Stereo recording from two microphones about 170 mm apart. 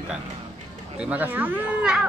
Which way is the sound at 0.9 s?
10° right (ahead or behind).